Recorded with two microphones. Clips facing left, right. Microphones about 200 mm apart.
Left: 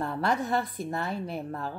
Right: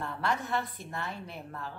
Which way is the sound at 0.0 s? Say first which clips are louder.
Left 5 dB; 40° left (ahead or behind).